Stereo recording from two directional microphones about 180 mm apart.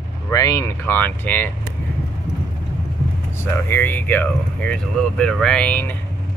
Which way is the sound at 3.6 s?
10° left (ahead or behind).